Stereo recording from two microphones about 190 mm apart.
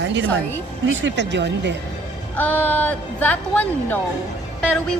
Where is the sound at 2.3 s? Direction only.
10° left (ahead or behind).